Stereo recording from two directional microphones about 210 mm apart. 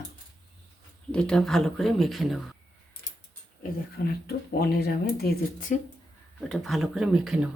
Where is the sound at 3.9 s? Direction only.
50° left (ahead or behind).